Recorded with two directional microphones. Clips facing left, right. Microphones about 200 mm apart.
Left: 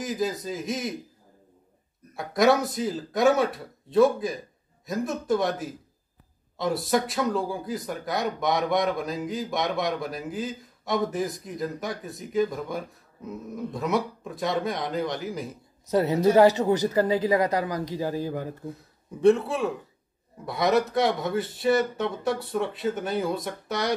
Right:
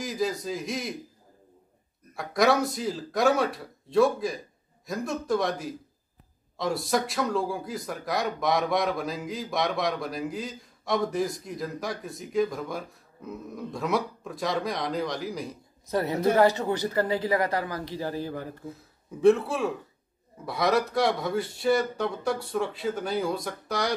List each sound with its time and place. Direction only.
0.0 s speech: centre (ahead or behind)
2.1 s speech: centre (ahead or behind)
15.9 s speech: 15° left (ahead or behind)
19.2 s speech: centre (ahead or behind)